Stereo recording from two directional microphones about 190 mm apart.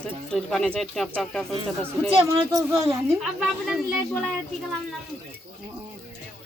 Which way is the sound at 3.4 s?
5° right (ahead or behind).